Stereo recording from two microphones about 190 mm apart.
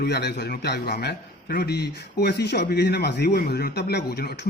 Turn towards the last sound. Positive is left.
turn(degrees=60)  # may be behind; listen again after turning